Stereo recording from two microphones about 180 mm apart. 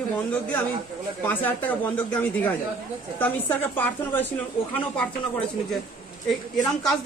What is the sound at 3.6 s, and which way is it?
Speech, 10° left (ahead or behind).